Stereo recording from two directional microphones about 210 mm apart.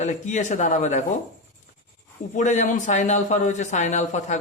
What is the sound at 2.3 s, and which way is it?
A man's voice, 35° left (ahead or behind).